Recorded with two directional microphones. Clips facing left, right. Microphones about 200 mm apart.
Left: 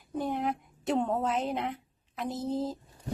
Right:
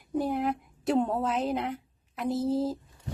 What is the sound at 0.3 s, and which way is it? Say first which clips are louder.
A woman's voice: right 2 dB; centre (ahead or behind).